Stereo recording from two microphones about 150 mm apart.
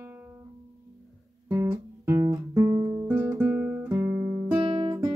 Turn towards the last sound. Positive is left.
turn(degrees=-35)  # may be behind; listen again after turning